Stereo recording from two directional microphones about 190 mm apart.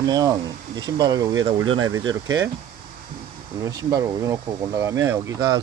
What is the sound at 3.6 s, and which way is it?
Speech, 20° right (ahead or behind).